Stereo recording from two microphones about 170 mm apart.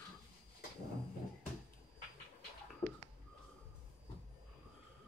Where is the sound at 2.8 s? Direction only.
20° left (ahead or behind).